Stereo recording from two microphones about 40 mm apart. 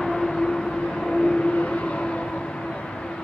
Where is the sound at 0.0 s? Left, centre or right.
Centre.